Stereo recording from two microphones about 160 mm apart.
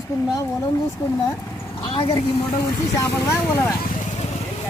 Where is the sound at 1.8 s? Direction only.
30° left (ahead or behind).